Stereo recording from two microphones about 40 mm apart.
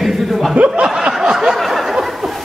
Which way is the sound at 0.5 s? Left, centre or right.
Right.